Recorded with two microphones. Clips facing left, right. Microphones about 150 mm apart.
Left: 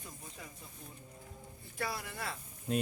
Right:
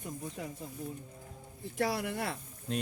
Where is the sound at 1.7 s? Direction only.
75° right (ahead or behind).